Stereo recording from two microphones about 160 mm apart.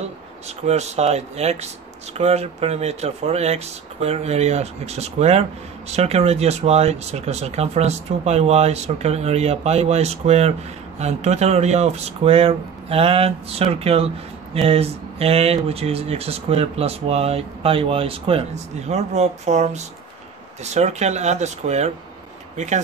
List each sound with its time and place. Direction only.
0.7 s speech: 45° right (ahead or behind)